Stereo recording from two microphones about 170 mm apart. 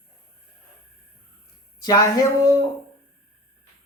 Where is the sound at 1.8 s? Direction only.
20° left (ahead or behind).